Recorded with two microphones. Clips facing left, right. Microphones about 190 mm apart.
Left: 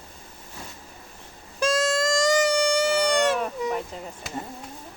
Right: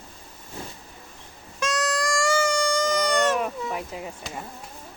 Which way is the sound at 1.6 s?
30° left (ahead or behind).